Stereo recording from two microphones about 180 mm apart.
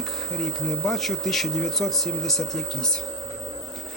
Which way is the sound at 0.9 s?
Centre (ahead or behind).